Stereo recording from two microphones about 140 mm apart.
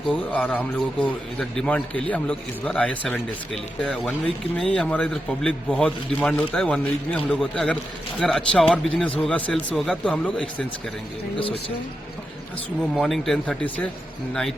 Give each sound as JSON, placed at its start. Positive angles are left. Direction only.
{"t": 0.3, "sound": "a man's voice", "side_deg": 10}
{"t": 12.9, "sound": "speech", "side_deg": 0}